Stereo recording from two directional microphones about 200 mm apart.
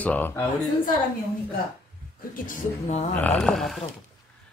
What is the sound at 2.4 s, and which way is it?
Speech, 35° left (ahead or behind).